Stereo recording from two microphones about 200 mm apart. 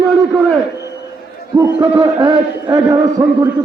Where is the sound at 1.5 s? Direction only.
20° right (ahead or behind).